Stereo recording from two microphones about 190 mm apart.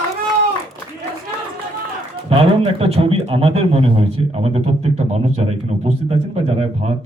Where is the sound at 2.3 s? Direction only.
30° right (ahead or behind).